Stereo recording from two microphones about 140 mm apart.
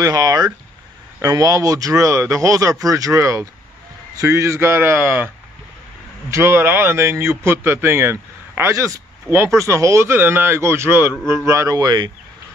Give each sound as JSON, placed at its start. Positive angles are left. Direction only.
{"t": 0.0, "sound": "speech", "side_deg": -25}
{"t": 6.3, "sound": "speech", "side_deg": -15}